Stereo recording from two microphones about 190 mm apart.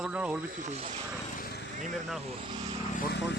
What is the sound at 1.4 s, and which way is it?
Vehicle, 60° left (ahead or behind).